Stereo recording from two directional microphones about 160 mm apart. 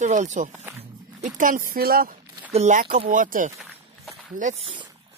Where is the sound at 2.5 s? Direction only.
45° right (ahead or behind).